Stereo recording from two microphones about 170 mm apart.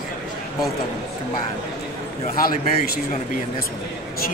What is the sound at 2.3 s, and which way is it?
Speech, 60° left (ahead or behind).